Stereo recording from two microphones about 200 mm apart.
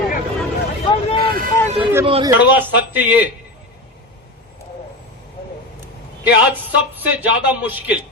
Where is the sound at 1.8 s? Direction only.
10° right (ahead or behind).